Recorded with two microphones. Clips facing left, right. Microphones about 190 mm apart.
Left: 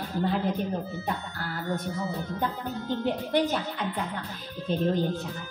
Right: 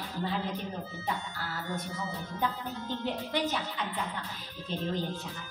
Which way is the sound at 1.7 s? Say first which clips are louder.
Left 7 dB; 55° left (ahead or behind).